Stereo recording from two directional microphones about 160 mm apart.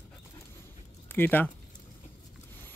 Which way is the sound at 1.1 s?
10° left (ahead or behind).